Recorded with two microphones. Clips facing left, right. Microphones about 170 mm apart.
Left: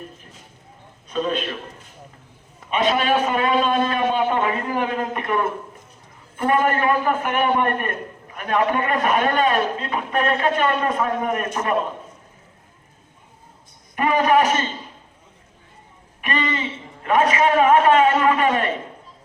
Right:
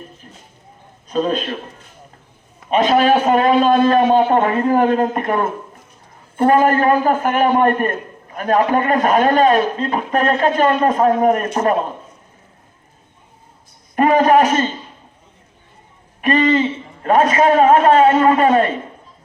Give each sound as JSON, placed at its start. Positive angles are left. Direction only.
{"t": 1.0, "sound": "a man's voice", "side_deg": -35}
{"t": 2.6, "sound": "a man's voice", "side_deg": -40}
{"t": 13.9, "sound": "a man's voice", "side_deg": -40}
{"t": 16.2, "sound": "a man's voice", "side_deg": -40}